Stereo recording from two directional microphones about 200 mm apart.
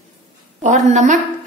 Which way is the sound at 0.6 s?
35° right (ahead or behind).